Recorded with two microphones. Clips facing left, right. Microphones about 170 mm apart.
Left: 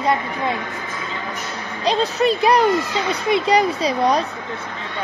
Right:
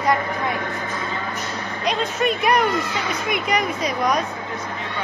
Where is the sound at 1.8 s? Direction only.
30° left (ahead or behind).